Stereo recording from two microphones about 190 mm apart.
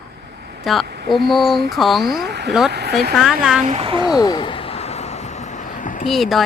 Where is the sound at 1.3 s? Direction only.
Centre (ahead or behind).